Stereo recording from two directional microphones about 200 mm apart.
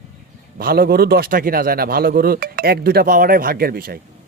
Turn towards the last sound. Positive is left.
turn(degrees=-50)  # may be behind; listen again after turning